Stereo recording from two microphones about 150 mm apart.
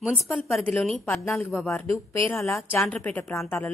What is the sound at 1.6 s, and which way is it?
Speech, 15° left (ahead or behind).